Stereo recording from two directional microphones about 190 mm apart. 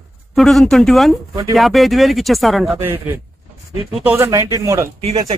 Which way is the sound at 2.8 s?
10° right (ahead or behind).